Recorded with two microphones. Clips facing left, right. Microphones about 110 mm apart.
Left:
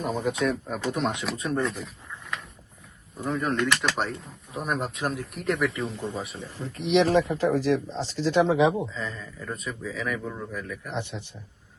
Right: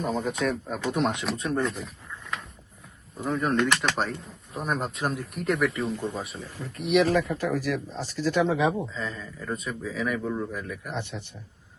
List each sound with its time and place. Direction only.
0.0 s speech: 5° left (ahead or behind)
3.2 s speech: centre (ahead or behind)
6.6 s speech: 30° left (ahead or behind)
8.9 s speech: centre (ahead or behind)
10.9 s a man's voice: 15° left (ahead or behind)